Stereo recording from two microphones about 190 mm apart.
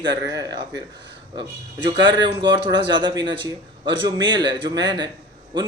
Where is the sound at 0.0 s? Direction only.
20° right (ahead or behind).